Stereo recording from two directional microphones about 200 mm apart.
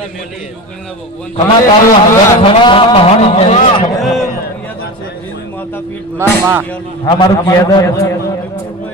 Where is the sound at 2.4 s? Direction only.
25° left (ahead or behind).